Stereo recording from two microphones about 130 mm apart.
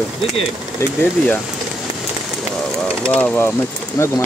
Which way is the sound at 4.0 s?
25° left (ahead or behind).